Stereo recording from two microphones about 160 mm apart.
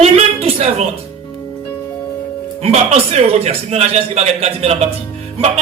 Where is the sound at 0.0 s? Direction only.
40° right (ahead or behind).